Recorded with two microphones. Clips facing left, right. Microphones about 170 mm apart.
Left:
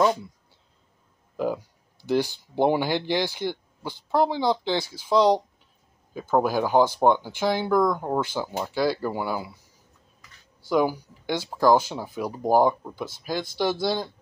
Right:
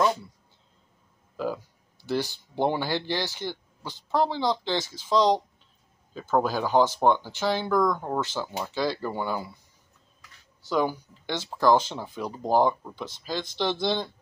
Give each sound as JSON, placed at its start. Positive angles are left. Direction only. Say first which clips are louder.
{"t": 1.3, "sound": "a sound", "louder": "left 3 dB", "side_deg": 15}
{"t": 2.0, "sound": "speech", "louder": "left 4 dB", "side_deg": 15}
{"t": 10.7, "sound": "speech", "louder": "left 3 dB", "side_deg": 10}